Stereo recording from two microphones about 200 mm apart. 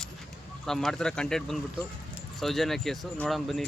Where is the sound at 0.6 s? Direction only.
Centre (ahead or behind).